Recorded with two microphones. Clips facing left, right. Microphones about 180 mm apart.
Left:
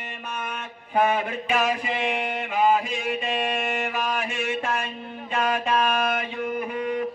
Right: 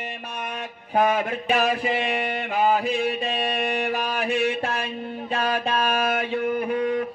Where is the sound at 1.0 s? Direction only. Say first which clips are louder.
Right 1 dB; 45° right (ahead or behind).